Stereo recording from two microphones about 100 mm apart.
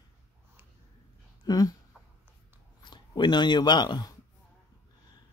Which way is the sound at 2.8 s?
50° left (ahead or behind).